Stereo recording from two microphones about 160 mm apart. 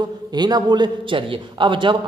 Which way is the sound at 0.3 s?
25° right (ahead or behind).